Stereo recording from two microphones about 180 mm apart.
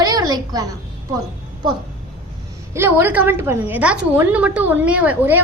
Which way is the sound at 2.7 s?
10° right (ahead or behind).